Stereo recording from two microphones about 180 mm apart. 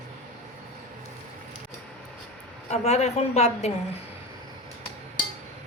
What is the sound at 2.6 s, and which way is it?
A woman's voice, 40° left (ahead or behind).